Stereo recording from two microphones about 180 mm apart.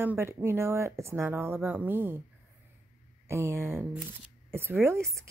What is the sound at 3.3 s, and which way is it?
Speech, 15° right (ahead or behind).